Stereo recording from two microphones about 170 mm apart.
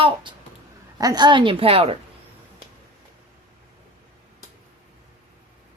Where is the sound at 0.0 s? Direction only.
30° right (ahead or behind).